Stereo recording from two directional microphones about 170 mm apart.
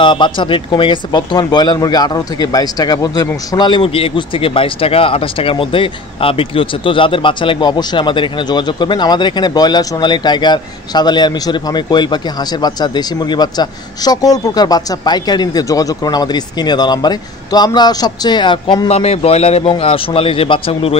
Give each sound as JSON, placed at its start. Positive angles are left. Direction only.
{"t": 0.0, "sound": "a man's voice", "side_deg": 30}